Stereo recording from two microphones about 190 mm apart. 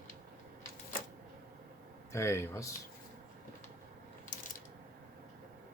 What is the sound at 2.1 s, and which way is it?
Speech, 15° left (ahead or behind).